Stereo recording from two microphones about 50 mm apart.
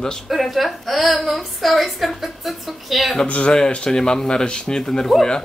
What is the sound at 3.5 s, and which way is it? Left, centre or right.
Speech, centre.